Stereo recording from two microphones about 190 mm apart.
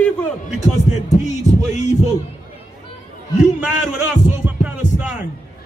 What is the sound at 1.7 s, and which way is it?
Music, 35° left (ahead or behind).